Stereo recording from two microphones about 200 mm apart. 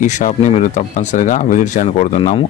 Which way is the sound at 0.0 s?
35° left (ahead or behind).